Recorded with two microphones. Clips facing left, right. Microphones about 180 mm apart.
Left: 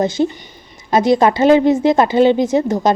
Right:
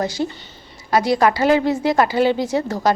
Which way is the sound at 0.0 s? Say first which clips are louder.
Left 6 dB; 20° left (ahead or behind).